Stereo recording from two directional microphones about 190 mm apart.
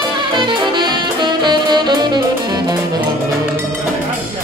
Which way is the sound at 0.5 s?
25° right (ahead or behind).